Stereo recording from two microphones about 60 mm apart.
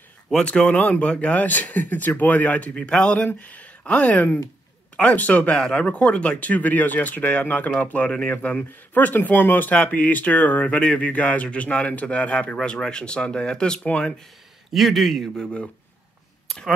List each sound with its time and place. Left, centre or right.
0.3 s speech: centre
2.7 s speech: centre
3.3 s speech: left
5.5 s speech: centre
14.7 s speech: centre
15.4 s speech: centre